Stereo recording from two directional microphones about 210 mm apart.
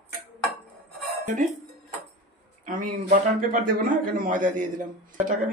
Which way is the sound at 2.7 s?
40° right (ahead or behind).